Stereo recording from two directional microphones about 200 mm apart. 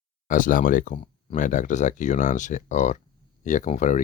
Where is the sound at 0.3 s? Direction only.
40° left (ahead or behind).